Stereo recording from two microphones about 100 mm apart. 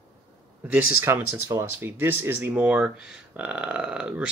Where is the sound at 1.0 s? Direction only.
20° right (ahead or behind).